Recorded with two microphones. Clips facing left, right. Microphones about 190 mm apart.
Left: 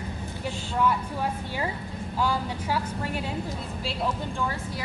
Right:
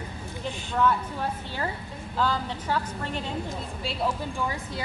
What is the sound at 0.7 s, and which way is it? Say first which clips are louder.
A woman's voice: right 1 dB; 10° left (ahead or behind).